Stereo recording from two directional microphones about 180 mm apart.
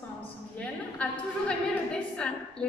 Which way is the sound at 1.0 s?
5° left (ahead or behind).